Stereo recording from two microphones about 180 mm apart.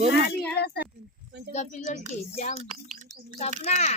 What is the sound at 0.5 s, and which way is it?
Speech, 65° left (ahead or behind).